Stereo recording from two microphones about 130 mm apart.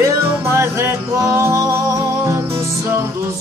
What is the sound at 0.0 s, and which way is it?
Music, 20° right (ahead or behind).